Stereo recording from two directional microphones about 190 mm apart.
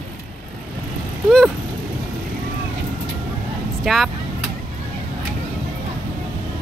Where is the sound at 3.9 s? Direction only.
Centre (ahead or behind).